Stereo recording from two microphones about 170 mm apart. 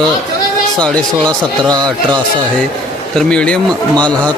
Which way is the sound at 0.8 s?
5° left (ahead or behind).